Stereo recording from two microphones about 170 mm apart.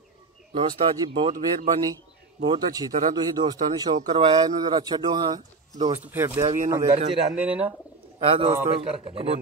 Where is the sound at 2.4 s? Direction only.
25° right (ahead or behind).